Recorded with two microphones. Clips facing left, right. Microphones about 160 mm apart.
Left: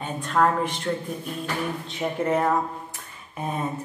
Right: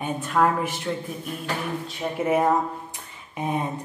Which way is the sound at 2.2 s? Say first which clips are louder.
Right 2 dB; 10° right (ahead or behind).